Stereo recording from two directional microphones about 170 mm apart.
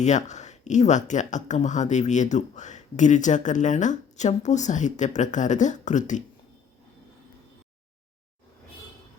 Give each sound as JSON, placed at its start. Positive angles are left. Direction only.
{"t": 0.0, "sound": "speech", "side_deg": 45}